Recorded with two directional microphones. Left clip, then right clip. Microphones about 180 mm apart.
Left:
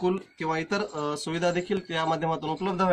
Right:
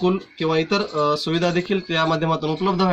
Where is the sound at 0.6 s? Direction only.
10° right (ahead or behind).